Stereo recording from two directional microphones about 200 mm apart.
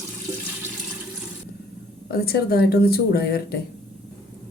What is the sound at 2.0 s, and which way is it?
A woman's voice, 50° left (ahead or behind).